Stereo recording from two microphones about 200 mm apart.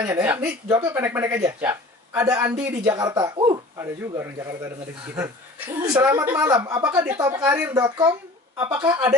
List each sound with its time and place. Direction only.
0.0 s speech: 10° right (ahead or behind)